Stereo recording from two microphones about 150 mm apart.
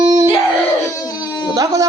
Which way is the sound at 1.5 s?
20° right (ahead or behind).